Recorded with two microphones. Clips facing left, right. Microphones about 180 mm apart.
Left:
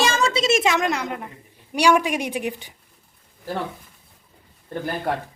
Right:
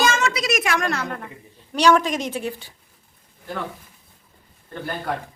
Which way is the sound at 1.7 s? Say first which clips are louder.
Right 1 dB; 10° left (ahead or behind).